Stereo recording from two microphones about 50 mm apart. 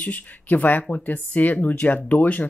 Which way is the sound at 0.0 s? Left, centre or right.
Left.